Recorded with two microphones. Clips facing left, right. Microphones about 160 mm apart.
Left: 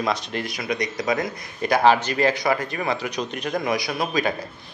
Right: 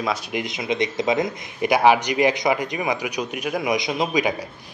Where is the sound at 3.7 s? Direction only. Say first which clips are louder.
Right 2 dB; 20° right (ahead or behind).